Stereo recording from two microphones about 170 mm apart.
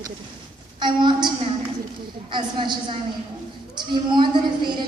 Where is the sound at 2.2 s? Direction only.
30° right (ahead or behind).